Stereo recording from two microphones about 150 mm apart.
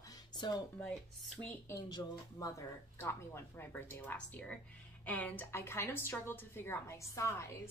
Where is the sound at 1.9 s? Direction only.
20° left (ahead or behind).